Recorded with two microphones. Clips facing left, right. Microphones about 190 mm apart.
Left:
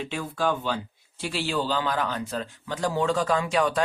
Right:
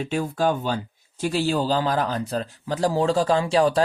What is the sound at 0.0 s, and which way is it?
A man's voice, 45° right (ahead or behind).